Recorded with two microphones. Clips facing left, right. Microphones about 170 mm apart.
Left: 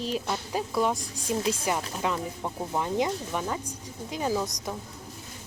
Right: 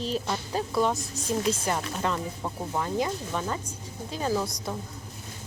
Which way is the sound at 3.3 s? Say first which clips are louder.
Even; 10° left (ahead or behind).